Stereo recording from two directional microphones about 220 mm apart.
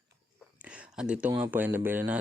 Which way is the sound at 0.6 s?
5° right (ahead or behind).